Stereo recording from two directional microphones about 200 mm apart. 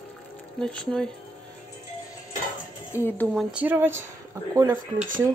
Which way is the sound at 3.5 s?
10° right (ahead or behind).